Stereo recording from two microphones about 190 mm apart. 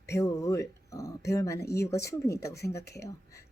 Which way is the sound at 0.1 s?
15° left (ahead or behind).